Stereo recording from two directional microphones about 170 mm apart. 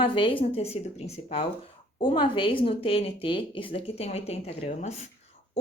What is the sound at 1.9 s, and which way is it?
Speech, 30° left (ahead or behind).